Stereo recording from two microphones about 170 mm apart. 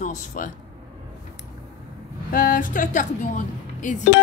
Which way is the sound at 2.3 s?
55° left (ahead or behind).